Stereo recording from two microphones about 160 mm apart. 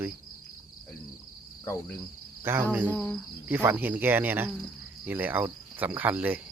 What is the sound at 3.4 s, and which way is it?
Cricket, 10° right (ahead or behind).